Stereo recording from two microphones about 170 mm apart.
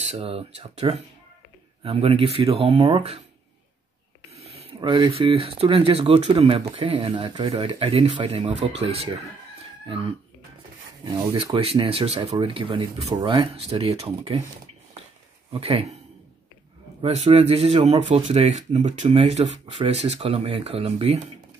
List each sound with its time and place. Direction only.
0.0 s speech: 35° right (ahead or behind)
4.4 s a sound: 35° right (ahead or behind)
4.7 s speech: 25° right (ahead or behind)
15.5 s speech: 35° right (ahead or behind)
17.0 s speech: 35° right (ahead or behind)